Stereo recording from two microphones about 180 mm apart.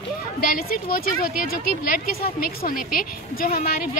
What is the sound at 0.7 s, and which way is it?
Speech, 55° left (ahead or behind).